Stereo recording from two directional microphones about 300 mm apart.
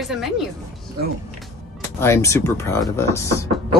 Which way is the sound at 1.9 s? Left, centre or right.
Centre.